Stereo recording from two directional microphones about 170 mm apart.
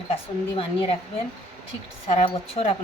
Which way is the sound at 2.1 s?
40° left (ahead or behind).